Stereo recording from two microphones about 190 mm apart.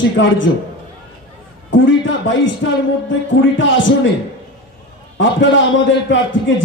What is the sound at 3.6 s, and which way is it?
Speech, 80° left.